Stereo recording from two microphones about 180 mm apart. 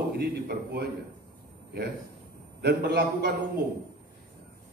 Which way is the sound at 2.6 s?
65° right (ahead or behind).